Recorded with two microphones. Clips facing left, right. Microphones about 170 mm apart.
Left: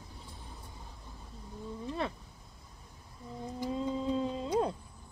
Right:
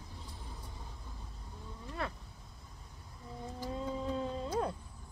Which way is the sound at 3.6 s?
20° left (ahead or behind).